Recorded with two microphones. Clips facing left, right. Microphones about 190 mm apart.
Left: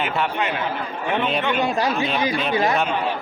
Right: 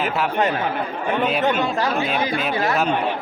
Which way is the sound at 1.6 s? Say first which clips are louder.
Left 1 dB; 15° left (ahead or behind).